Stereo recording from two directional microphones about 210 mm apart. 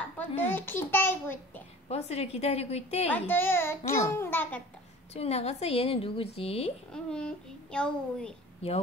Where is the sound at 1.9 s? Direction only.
30° left (ahead or behind).